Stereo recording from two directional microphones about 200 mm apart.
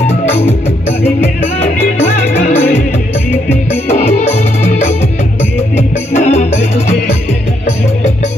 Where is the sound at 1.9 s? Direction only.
35° left (ahead or behind).